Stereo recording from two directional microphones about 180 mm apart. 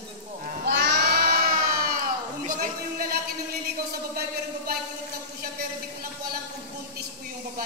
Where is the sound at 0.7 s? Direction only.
70° right (ahead or behind).